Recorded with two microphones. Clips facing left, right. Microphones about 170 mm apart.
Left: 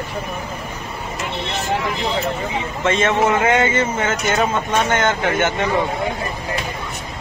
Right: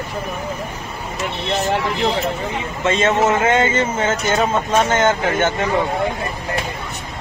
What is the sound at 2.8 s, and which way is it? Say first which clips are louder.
A man's voice: right 1 dB; 20° right (ahead or behind).